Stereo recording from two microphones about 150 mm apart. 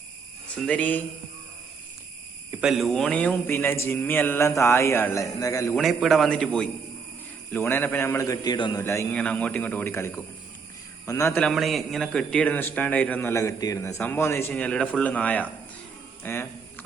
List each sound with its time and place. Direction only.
0.6 s a man's voice: 10° left (ahead or behind)
2.6 s a man's voice: centre (ahead or behind); by 5.7 s 20° left (ahead or behind)
5.7 s a man's voice: centre (ahead or behind); by 8.8 s 30° left (ahead or behind)
8.8 s a man's voice: 20° left (ahead or behind)
9.1 s a man's voice: 10° left (ahead or behind)
11.3 s a man's voice: centre (ahead or behind)
16.2 s a sound: 15° left (ahead or behind)